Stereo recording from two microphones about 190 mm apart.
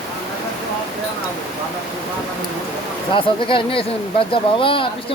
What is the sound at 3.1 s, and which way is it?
Speech, 25° left (ahead or behind).